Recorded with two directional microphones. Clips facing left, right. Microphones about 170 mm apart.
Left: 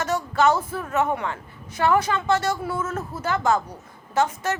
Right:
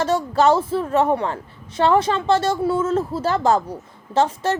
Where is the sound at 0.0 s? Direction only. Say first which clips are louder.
Right 4 dB; 30° right (ahead or behind).